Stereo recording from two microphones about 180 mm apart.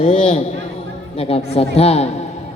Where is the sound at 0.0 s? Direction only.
30° left (ahead or behind).